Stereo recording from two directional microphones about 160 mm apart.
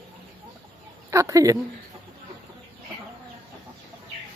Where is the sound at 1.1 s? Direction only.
20° right (ahead or behind).